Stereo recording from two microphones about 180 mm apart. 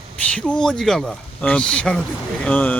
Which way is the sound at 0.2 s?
5° left (ahead or behind).